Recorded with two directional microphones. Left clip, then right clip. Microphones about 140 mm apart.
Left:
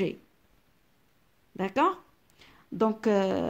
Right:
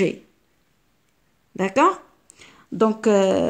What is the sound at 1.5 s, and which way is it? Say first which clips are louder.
Speech: right 8 dB; 25° left (ahead or behind).